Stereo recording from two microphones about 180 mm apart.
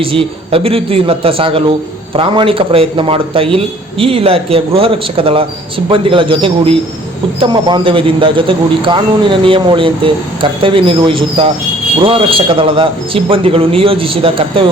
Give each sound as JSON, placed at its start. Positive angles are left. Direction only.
{"t": 0.0, "sound": "a man's voice", "side_deg": -30}